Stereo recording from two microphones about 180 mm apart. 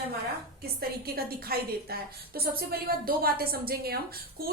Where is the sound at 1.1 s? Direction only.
55° right (ahead or behind).